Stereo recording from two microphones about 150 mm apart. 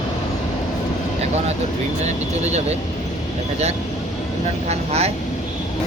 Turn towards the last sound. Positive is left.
turn(degrees=-45)  # may be behind; listen again after turning